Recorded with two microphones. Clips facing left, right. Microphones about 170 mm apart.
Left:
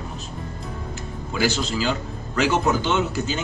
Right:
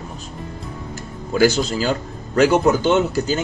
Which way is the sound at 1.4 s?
40° right (ahead or behind).